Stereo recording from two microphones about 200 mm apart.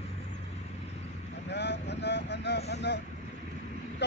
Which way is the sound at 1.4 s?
60° left (ahead or behind).